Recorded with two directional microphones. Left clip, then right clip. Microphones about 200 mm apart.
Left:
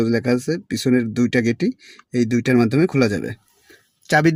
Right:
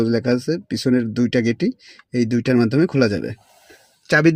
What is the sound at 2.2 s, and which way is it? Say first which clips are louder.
Speech: even; 15° left (ahead or behind).